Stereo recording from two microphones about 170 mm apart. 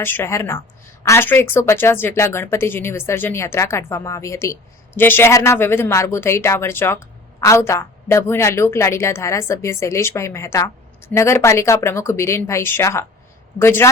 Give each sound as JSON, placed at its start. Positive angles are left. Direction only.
{"t": 0.0, "sound": "a woman's voice", "side_deg": 15}